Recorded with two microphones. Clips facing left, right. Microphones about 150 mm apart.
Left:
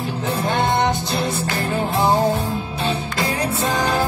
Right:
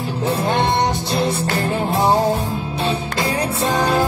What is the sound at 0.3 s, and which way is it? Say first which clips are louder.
Music: right 2 dB; 30° right (ahead or behind).